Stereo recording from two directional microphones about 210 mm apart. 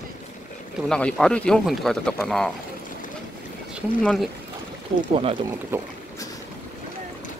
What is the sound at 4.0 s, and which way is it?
Speech, centre (ahead or behind).